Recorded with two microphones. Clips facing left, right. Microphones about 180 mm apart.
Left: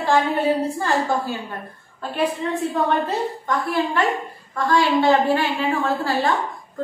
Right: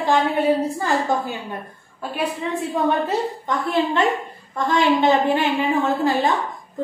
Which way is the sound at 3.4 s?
20° right (ahead or behind).